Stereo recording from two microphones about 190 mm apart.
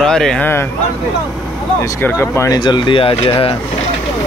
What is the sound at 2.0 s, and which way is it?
Speech, 10° left (ahead or behind).